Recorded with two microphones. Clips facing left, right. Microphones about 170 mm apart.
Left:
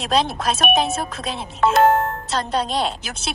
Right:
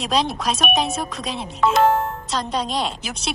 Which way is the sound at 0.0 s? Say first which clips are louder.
Left 1 dB; centre (ahead or behind).